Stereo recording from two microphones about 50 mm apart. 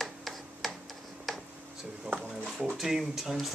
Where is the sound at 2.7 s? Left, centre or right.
Centre.